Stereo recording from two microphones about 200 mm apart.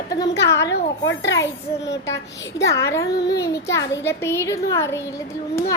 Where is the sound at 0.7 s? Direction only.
65° left (ahead or behind).